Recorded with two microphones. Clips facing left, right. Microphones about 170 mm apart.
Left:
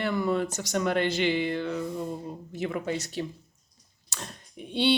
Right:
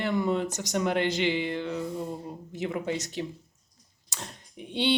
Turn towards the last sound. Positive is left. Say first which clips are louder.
# left 2 dB
turn(degrees=-15)  # may be behind; listen again after turning